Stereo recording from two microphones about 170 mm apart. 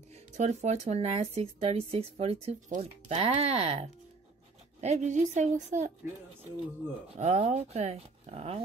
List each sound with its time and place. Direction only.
0.1 s a woman's voice: 40° right (ahead or behind)
7.2 s speech: 40° right (ahead or behind)